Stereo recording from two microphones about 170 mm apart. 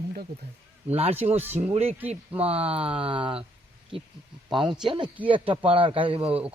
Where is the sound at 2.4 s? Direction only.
35° right (ahead or behind).